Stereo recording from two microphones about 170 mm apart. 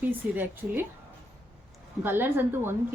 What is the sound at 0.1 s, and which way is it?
Speech, 10° right (ahead or behind).